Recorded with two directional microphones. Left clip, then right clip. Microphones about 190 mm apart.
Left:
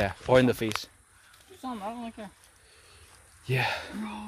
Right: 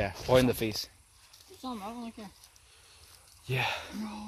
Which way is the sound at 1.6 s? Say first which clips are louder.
Left 4 dB; 10° right (ahead or behind).